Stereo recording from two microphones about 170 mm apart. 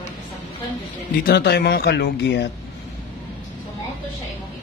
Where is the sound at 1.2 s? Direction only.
70° left (ahead or behind); by 2.5 s 90° left.